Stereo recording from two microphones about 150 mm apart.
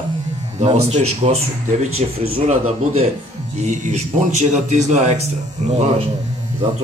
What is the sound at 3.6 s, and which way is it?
Speech, 55° right (ahead or behind).